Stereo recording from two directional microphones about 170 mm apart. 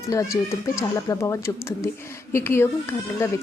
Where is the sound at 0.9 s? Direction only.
20° left (ahead or behind).